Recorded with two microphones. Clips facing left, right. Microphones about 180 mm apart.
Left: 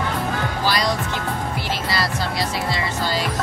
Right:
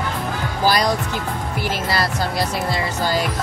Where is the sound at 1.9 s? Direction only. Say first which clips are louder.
Right 1 dB; 50° right (ahead or behind).